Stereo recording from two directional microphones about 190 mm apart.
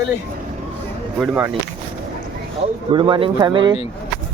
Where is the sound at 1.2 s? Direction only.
5° right (ahead or behind).